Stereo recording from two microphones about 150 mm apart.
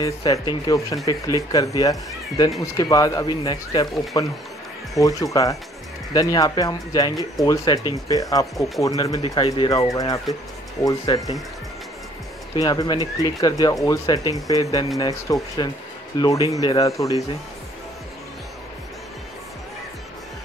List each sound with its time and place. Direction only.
0.0 s speech: 25° left (ahead or behind)
8.5 s speech: centre (ahead or behind)
8.8 s speech: 20° left (ahead or behind)
12.5 s speech: 25° left (ahead or behind)